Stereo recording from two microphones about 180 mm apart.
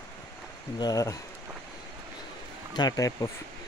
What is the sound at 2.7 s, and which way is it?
Speech, 20° left (ahead or behind).